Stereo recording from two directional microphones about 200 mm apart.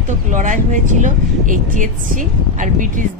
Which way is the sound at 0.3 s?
40° right (ahead or behind).